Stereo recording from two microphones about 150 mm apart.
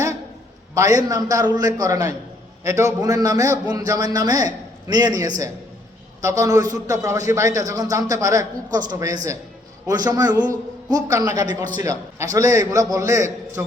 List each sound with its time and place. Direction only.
0.7 s a man's voice: 20° right (ahead or behind)